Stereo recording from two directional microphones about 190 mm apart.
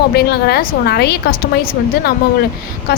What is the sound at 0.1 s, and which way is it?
A woman's voice, 55° left (ahead or behind).